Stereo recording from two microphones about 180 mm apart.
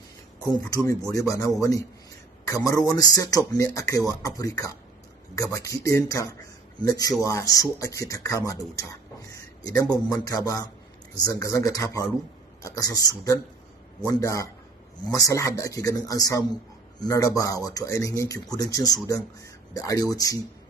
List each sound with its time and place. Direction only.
0.4 s speech: 20° left (ahead or behind)
9.3 s a sound: 20° left (ahead or behind)
10.0 s speech: 20° left (ahead or behind)